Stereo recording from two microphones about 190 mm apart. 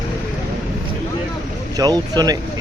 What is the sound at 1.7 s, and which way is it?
Speech, 20° right (ahead or behind).